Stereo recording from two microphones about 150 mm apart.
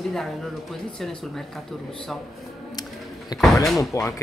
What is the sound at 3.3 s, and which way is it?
Speech, 25° left (ahead or behind).